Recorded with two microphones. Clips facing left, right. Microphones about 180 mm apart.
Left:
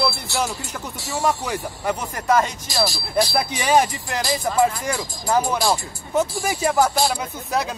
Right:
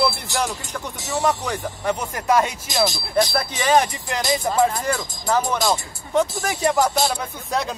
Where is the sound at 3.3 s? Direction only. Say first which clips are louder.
Left 2 dB; 10° left (ahead or behind).